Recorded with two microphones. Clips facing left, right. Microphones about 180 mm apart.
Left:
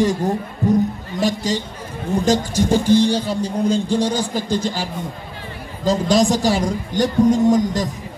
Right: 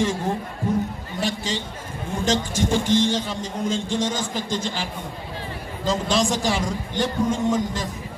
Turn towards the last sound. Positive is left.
turn(degrees=40)  # may be behind; listen again after turning